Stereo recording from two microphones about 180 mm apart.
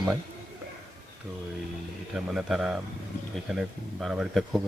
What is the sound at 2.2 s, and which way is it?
Speech, 5° right (ahead or behind).